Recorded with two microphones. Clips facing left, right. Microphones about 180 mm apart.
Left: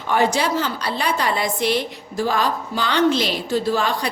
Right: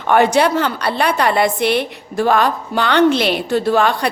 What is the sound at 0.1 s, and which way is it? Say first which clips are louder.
A woman's voice: right 6 dB; 60° right (ahead or behind).